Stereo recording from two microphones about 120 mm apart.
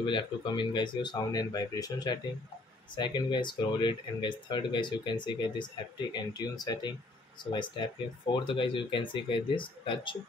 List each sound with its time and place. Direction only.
0.0 s speech: 40° left (ahead or behind)